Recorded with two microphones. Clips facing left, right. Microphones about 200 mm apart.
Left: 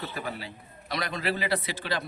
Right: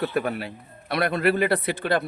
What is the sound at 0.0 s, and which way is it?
A man's voice, 60° right (ahead or behind).